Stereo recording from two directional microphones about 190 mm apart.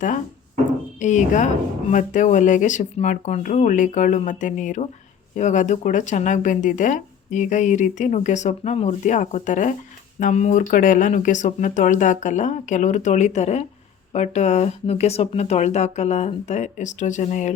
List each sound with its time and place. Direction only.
0.9 s speech: 40° left (ahead or behind)